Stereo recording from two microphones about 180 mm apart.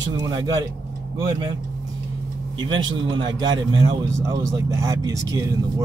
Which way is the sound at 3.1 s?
25° right (ahead or behind).